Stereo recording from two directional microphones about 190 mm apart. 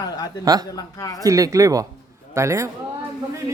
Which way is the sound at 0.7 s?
20° left (ahead or behind).